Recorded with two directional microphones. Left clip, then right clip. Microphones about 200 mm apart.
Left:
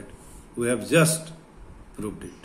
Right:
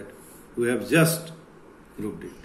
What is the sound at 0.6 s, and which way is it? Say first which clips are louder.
Speech: even; 45° left (ahead or behind).